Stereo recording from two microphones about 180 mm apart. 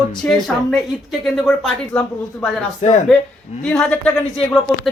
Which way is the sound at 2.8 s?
40° left (ahead or behind).